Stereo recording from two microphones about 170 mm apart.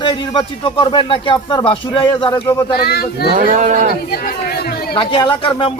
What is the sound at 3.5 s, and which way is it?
Speech, 50° right (ahead or behind).